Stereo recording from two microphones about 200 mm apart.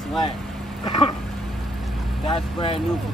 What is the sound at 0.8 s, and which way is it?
Speech, 20° left (ahead or behind).